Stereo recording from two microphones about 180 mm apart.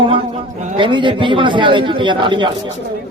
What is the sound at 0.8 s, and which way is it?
Speech, 25° right (ahead or behind).